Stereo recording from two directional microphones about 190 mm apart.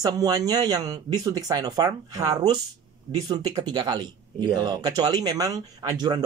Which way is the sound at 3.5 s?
20° right (ahead or behind).